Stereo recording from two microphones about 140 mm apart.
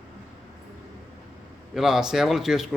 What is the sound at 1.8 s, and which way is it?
Speech, 5° right (ahead or behind).